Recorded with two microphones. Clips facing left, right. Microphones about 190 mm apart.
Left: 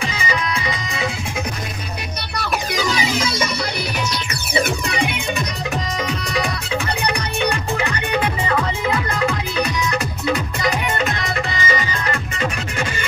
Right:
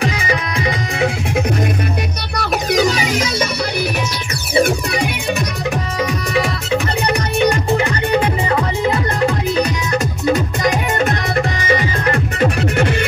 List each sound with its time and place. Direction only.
0.0 s music: 60° right (ahead or behind)
7.7 s music: 35° right (ahead or behind)
10.2 s music: 45° right (ahead or behind); by 13.0 s 65° right (ahead or behind)